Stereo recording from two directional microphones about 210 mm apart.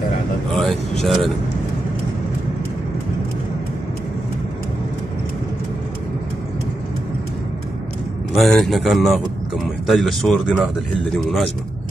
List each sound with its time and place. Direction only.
0.6 s speech: centre (ahead or behind)
8.4 s speech: centre (ahead or behind)